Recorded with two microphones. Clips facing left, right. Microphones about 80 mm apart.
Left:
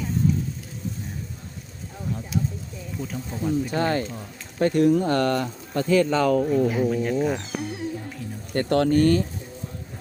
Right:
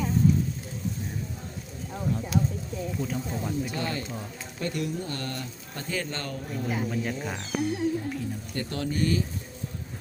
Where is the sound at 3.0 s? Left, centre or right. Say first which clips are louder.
Left 3 dB; centre.